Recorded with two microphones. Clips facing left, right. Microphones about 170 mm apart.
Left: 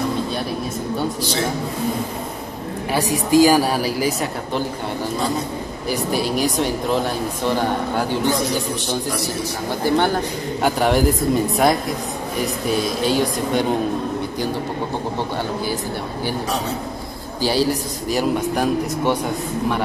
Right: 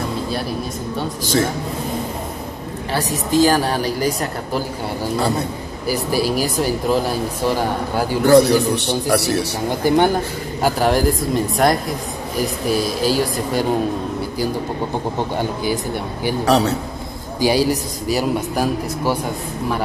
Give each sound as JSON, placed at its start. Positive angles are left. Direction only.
{"t": 3.3, "sound": "speech", "side_deg": 10}
{"t": 5.9, "sound": "speech", "side_deg": -5}
{"t": 8.3, "sound": "a man's voice", "side_deg": -65}
{"t": 9.8, "sound": "a man's voice", "side_deg": -15}
{"t": 10.6, "sound": "speech", "side_deg": 0}
{"t": 15.3, "sound": "a man's voice", "side_deg": -15}
{"t": 16.4, "sound": "a man's voice", "side_deg": -70}
{"t": 17.4, "sound": "a man's voice", "side_deg": -15}